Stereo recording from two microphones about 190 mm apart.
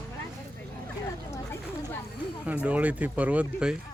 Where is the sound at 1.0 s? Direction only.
15° left (ahead or behind).